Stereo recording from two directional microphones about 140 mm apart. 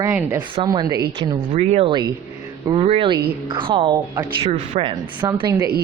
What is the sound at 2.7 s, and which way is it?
Speech, 45° right (ahead or behind).